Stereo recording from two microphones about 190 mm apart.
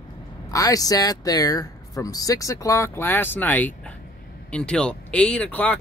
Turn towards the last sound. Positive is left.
turn(degrees=10)  # may be behind; listen again after turning